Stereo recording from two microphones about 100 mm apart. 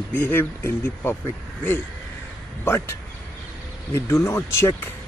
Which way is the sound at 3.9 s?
25° left (ahead or behind).